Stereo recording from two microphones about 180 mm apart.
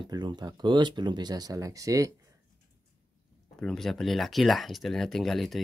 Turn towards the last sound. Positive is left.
turn(degrees=0)  # may be behind; listen again after turning